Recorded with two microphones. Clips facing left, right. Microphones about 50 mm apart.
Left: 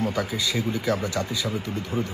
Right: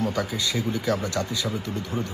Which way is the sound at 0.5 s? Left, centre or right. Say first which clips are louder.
Even; left.